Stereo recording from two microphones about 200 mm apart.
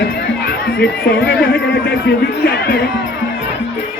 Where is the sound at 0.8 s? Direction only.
55° left (ahead or behind).